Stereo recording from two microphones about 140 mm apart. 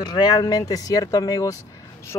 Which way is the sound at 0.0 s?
30° left (ahead or behind).